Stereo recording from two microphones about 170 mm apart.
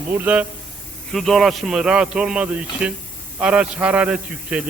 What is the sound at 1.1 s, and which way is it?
A man's voice, centre (ahead or behind).